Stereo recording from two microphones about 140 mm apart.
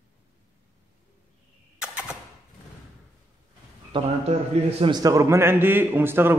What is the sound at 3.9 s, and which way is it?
A man's voice, 45° right (ahead or behind).